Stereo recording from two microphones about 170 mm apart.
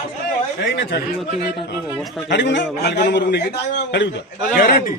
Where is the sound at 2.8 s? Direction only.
75° left (ahead or behind).